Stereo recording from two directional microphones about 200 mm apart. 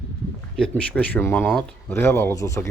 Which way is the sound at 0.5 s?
5° left (ahead or behind).